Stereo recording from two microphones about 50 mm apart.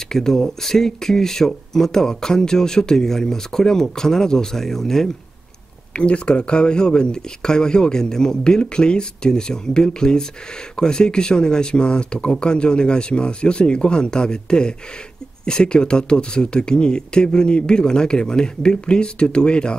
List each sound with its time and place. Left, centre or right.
0.1 s speech: centre
5.9 s speech: left